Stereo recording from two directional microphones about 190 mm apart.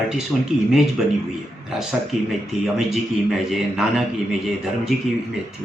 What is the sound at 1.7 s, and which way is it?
Speech, 5° right (ahead or behind).